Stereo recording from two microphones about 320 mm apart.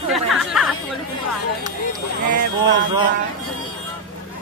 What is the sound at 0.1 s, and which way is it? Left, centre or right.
Chatter, centre.